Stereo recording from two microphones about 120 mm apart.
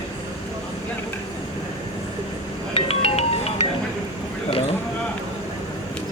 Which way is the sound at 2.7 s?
55° left (ahead or behind).